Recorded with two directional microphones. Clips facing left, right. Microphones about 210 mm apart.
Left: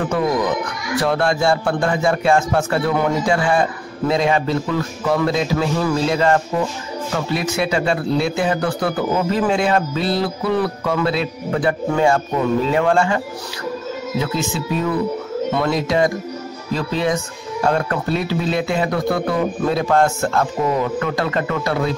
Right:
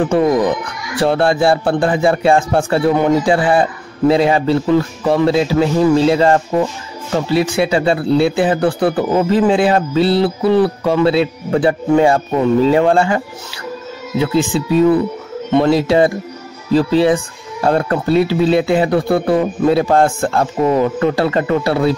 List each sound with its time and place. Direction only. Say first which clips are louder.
0.0 s speech: right 6 dB; 30° right (ahead or behind)